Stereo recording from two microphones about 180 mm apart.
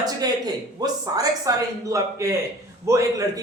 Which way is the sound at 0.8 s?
20° right (ahead or behind).